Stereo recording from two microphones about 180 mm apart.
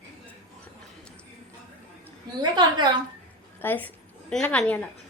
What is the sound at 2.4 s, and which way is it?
Speech, 25° right (ahead or behind).